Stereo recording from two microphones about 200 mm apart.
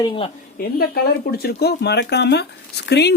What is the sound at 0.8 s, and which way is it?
Speech, 50° left (ahead or behind).